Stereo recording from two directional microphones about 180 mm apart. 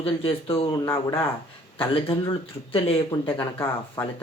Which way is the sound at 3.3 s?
10° left (ahead or behind).